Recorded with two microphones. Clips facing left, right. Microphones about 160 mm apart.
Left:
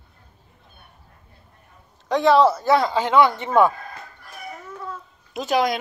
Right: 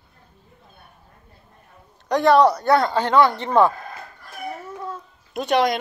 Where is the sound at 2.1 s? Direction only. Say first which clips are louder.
Right 1 dB; centre (ahead or behind).